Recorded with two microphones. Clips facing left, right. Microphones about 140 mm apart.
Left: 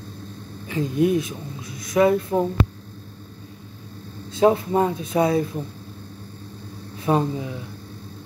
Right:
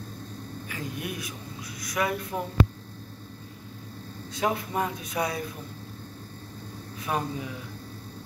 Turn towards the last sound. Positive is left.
turn(degrees=30)  # may be behind; listen again after turning